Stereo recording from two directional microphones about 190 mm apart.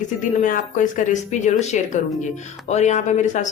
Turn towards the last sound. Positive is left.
turn(degrees=40)  # may be behind; listen again after turning